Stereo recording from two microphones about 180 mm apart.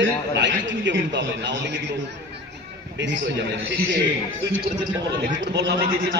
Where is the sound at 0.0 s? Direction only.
85° right.